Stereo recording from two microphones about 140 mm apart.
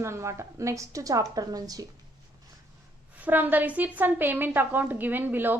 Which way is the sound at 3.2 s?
10° right (ahead or behind).